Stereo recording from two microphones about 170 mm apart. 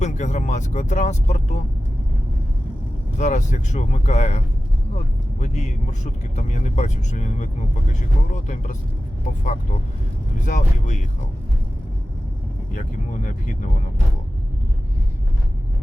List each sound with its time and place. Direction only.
0.0 s speech: 45° left (ahead or behind)
3.2 s speech: 45° left (ahead or behind)
10.4 s speech: 45° left (ahead or behind)
12.7 s speech: 50° left (ahead or behind)